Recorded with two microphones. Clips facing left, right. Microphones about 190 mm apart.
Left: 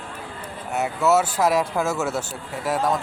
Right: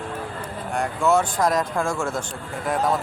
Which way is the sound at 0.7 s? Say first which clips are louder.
Left 1 dB; 5° left (ahead or behind).